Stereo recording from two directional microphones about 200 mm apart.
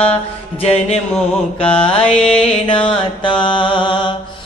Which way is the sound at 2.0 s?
5° left (ahead or behind).